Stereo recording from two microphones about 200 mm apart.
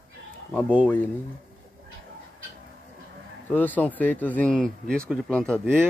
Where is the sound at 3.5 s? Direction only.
10° left (ahead or behind).